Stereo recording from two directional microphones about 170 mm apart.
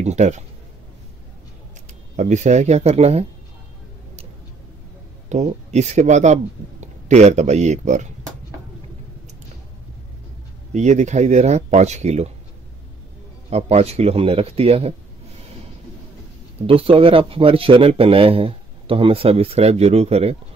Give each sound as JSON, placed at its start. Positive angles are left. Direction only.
{"t": 0.0, "sound": "speech", "side_deg": -40}
{"t": 2.1, "sound": "a man's voice", "side_deg": -45}
{"t": 5.3, "sound": "speech", "side_deg": -40}
{"t": 10.7, "sound": "a man's voice", "side_deg": -45}
{"t": 13.5, "sound": "a man's voice", "side_deg": -40}
{"t": 16.6, "sound": "a man's voice", "side_deg": -35}